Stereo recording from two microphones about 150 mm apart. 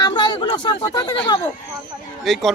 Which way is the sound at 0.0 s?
30° left (ahead or behind).